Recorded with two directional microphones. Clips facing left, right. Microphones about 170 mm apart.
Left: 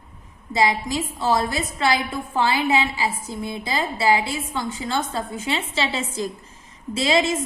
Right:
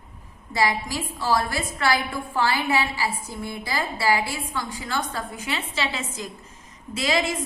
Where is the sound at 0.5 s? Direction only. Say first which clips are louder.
Left 3 dB; 20° left (ahead or behind).